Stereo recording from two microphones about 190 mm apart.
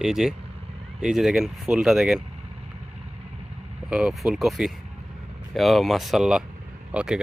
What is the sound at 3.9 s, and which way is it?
Speech, centre (ahead or behind).